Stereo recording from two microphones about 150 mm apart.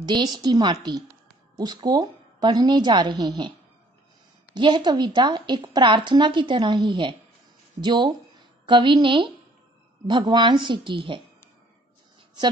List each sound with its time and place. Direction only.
0.0 s a woman's voice: 30° right (ahead or behind)
4.6 s a woman's voice: 30° right (ahead or behind)